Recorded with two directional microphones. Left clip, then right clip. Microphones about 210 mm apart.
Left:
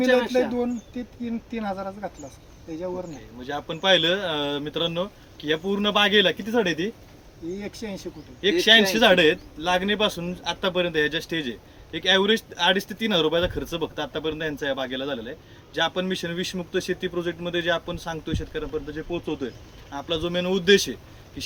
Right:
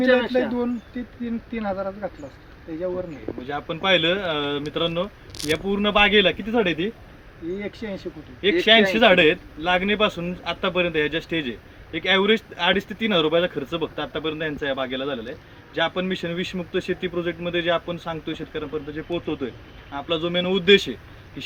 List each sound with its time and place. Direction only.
0.0 s speech: 35° left (ahead or behind)
3.4 s a man's voice: 5° left (ahead or behind)
8.4 s a man's voice: 10° left (ahead or behind)